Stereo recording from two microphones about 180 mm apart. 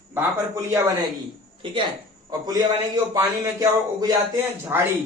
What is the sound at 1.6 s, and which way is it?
A man's voice, 30° right (ahead or behind).